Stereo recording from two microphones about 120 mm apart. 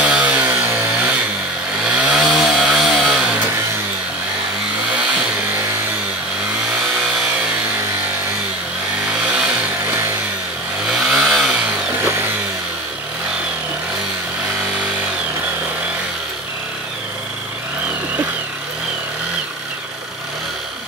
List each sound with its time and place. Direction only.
0.0 s chainsaw: 10° right (ahead or behind)
9.0 s motorcycle: 10° right (ahead or behind)
10.9 s chainsaw: 5° right (ahead or behind)
12.0 s a sound: 20° right (ahead or behind)